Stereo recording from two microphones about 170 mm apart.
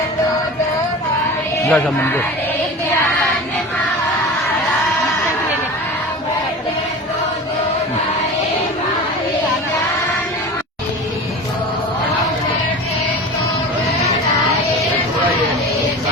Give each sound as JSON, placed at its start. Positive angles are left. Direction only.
{"t": 1.6, "sound": "speech", "side_deg": 10}